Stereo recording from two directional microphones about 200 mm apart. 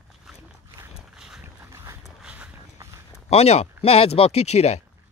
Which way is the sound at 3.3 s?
30° left (ahead or behind).